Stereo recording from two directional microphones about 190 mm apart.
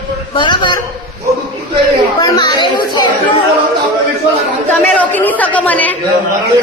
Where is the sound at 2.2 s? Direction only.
20° left (ahead or behind).